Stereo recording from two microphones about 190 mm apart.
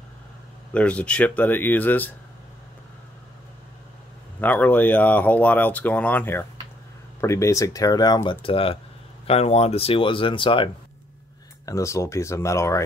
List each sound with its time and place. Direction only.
0.7 s speech: 5° left (ahead or behind)
4.4 s speech: 10° left (ahead or behind); by 10.7 s 25° left (ahead or behind)
11.6 s speech: 15° left (ahead or behind)